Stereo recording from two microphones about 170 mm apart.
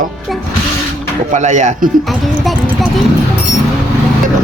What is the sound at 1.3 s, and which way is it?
Speech, 45° right (ahead or behind).